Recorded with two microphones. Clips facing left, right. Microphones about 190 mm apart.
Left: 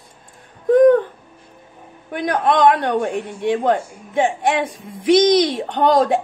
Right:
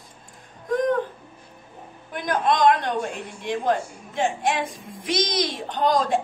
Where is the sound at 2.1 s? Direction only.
65° left (ahead or behind).